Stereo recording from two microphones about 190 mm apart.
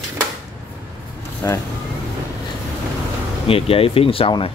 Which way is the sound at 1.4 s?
15° left (ahead or behind).